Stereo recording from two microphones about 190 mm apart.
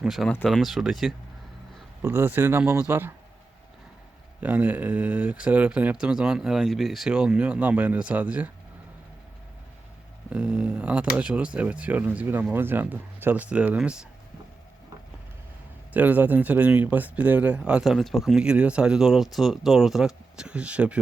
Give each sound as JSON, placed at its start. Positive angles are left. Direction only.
{"t": 0.0, "sound": "speech", "side_deg": 0}
{"t": 4.4, "sound": "speech", "side_deg": -10}
{"t": 10.2, "sound": "speech", "side_deg": -5}
{"t": 15.9, "sound": "speech", "side_deg": -10}